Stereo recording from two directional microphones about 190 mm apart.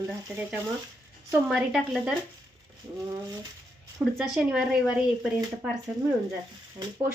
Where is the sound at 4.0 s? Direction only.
Centre (ahead or behind).